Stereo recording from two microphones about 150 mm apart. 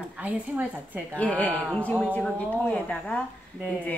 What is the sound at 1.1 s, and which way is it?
A woman's voice, 10° left (ahead or behind).